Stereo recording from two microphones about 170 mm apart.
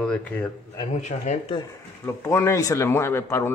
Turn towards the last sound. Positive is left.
turn(degrees=15)  # may be behind; listen again after turning